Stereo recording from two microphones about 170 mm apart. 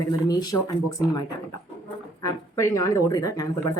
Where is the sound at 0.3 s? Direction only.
20° left (ahead or behind).